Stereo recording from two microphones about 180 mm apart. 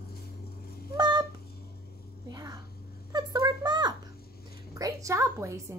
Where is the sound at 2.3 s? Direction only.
20° right (ahead or behind).